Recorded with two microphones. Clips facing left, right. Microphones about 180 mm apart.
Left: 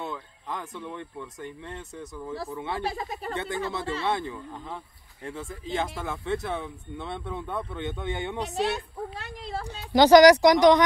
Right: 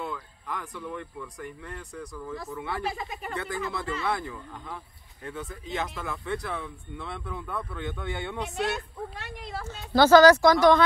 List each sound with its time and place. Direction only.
0.0 s speech: 25° left (ahead or behind)
2.9 s speech: 35° left (ahead or behind); by 8.4 s 20° left (ahead or behind)
8.4 s speech: 35° left (ahead or behind)
9.7 s speech: 15° left (ahead or behind)